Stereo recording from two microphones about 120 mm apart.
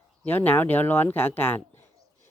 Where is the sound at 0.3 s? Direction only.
15° left (ahead or behind).